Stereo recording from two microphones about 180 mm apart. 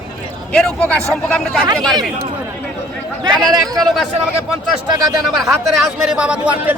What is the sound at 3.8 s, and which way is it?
Speech, centre (ahead or behind).